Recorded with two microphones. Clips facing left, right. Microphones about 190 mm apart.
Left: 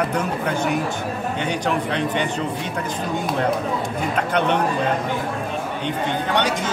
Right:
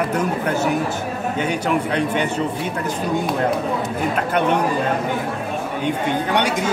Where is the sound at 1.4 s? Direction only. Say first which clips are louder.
Right 3 dB; 5° right (ahead or behind).